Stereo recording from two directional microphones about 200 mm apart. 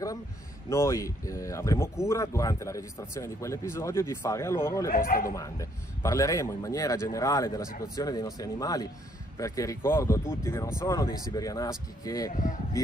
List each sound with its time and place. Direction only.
0.7 s a man's voice: 15° left (ahead or behind)
4.8 s a man's voice: 45° left (ahead or behind)
5.3 s a man's voice: 15° left (ahead or behind)